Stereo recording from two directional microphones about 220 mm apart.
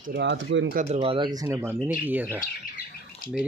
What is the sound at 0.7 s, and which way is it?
Speech, 30° right (ahead or behind).